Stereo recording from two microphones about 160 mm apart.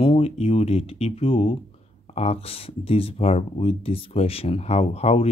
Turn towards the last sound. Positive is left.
turn(degrees=40)  # may be behind; listen again after turning